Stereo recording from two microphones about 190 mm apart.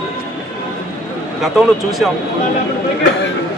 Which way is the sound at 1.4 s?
Centre (ahead or behind).